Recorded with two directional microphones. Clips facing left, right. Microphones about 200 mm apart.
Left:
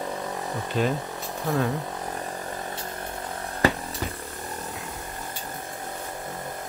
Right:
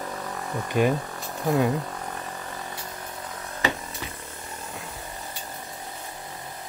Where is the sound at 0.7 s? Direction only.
10° right (ahead or behind).